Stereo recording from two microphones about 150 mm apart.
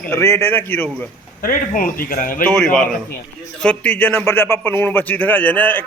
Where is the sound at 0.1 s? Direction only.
15° left (ahead or behind).